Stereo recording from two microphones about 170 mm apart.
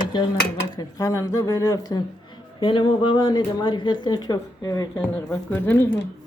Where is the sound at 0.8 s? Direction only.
20° left (ahead or behind).